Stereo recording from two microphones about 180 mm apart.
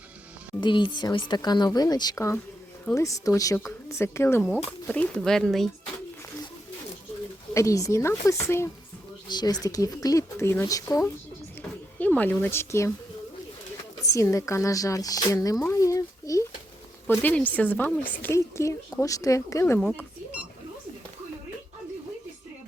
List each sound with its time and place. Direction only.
0.6 s speech: 25° left (ahead or behind); by 5.7 s centre (ahead or behind)
7.5 s speech: 15° left (ahead or behind)
14.0 s speech: 15° left (ahead or behind)
15.6 s a sound: 15° left (ahead or behind)
17.2 s speech: 10° left (ahead or behind)